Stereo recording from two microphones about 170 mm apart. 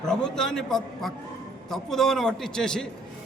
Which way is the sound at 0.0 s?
5° left (ahead or behind).